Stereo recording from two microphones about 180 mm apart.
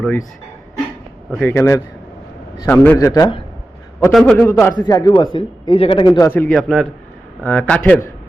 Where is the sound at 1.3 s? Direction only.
10° left (ahead or behind).